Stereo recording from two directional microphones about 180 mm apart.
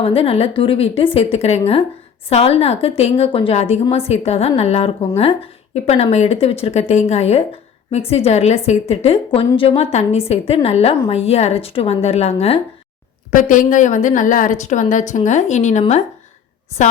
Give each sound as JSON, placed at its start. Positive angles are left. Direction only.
{"t": 0.0, "sound": "a woman's voice", "side_deg": 30}
{"t": 13.3, "sound": "a woman's voice", "side_deg": 50}